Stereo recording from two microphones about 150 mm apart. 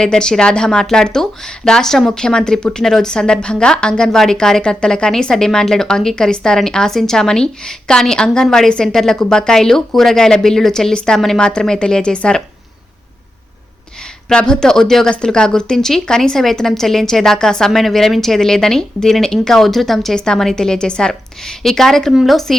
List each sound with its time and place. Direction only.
0.0 s speech: 5° left (ahead or behind)
14.3 s speech: 5° left (ahead or behind)